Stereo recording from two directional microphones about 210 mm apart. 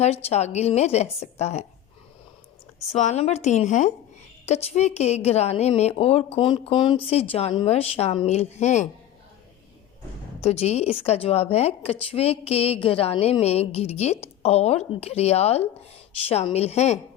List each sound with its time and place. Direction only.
0.0 s a woman's voice: 30° left (ahead or behind)
2.9 s a woman's voice: 30° left (ahead or behind)
10.4 s a woman's voice: 30° left (ahead or behind)